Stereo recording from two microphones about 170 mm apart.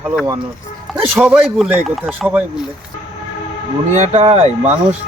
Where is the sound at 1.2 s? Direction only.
5° right (ahead or behind).